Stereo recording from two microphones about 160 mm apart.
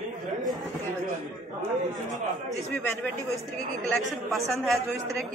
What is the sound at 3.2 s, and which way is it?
Speech, 20° right (ahead or behind).